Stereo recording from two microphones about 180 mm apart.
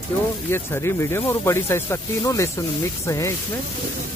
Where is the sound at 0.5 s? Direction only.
15° left (ahead or behind).